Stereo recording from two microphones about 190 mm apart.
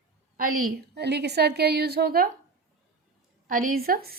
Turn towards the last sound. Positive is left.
turn(degrees=-55)  # may be behind; listen again after turning